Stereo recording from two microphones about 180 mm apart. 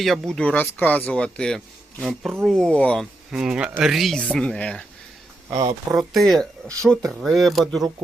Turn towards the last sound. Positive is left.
turn(degrees=0)  # may be behind; listen again after turning